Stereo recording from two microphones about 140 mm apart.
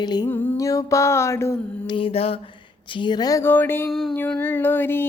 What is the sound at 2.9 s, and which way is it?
Speech, 35° left (ahead or behind).